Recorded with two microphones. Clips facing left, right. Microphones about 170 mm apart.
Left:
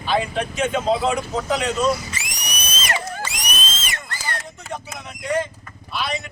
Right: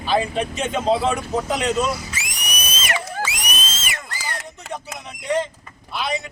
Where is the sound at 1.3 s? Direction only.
20° right (ahead or behind).